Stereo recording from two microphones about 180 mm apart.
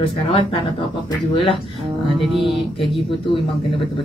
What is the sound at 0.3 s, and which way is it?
Speech, 30° left (ahead or behind).